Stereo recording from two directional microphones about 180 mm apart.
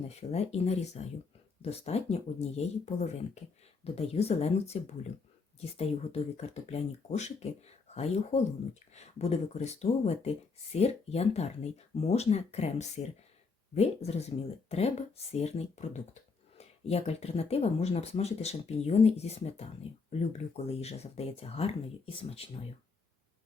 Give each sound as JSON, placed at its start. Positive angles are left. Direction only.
{"t": 0.2, "sound": "speech", "side_deg": 35}